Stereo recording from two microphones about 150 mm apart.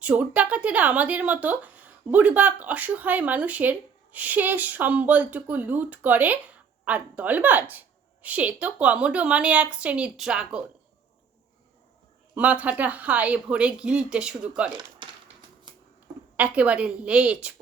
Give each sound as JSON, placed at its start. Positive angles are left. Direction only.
{"t": 0.0, "sound": "speech", "side_deg": -10}
{"t": 12.3, "sound": "speech", "side_deg": -10}
{"t": 14.7, "sound": "speech", "side_deg": -30}
{"t": 15.7, "sound": "a sound", "side_deg": -30}
{"t": 16.4, "sound": "speech", "side_deg": -10}